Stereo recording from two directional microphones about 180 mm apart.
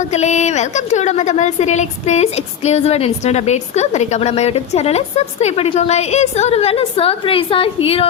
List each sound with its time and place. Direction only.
0.0 s a woman's voice: 40° left (ahead or behind)